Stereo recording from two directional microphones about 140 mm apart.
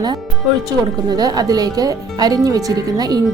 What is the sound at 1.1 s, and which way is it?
Speech, 25° right (ahead or behind).